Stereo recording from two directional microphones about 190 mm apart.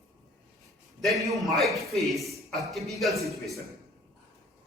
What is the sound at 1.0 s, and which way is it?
A man's voice, centre (ahead or behind).